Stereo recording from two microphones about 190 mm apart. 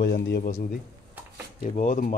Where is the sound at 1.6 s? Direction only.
45° left (ahead or behind).